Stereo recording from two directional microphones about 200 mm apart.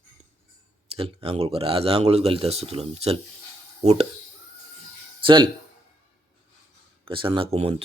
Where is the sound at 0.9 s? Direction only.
30° right (ahead or behind).